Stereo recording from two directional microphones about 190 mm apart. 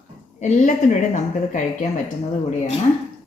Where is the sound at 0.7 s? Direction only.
40° left (ahead or behind).